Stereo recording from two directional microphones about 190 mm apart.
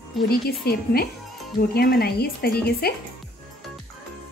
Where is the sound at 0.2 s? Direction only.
Centre (ahead or behind).